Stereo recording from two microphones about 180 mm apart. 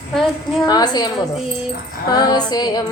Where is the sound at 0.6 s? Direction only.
20° left (ahead or behind).